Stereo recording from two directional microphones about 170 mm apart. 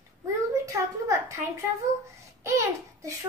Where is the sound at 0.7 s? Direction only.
15° right (ahead or behind).